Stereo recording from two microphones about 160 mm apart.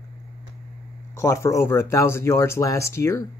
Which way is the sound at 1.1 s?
15° left (ahead or behind).